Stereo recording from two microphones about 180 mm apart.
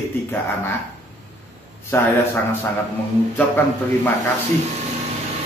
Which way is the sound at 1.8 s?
15° left (ahead or behind).